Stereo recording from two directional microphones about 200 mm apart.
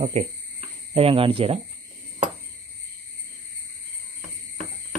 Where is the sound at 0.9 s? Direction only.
30° right (ahead or behind).